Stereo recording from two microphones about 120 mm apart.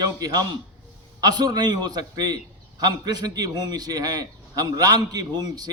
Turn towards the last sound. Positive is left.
turn(degrees=-35)  # may be behind; listen again after turning